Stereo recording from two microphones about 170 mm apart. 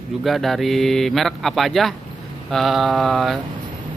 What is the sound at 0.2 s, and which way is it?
Speech, centre (ahead or behind).